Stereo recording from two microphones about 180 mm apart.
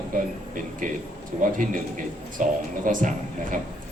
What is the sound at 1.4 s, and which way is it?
A man's voice, 50° right (ahead or behind).